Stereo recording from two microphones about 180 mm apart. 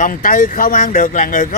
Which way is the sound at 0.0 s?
50° left (ahead or behind).